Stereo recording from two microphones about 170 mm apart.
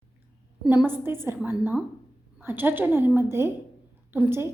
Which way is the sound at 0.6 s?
10° right (ahead or behind).